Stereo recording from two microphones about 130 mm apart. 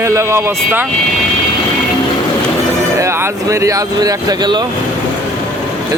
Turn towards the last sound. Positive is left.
turn(degrees=-30)  # may be behind; listen again after turning